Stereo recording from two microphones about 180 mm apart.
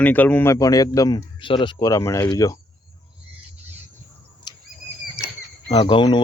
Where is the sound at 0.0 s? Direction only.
10° left (ahead or behind).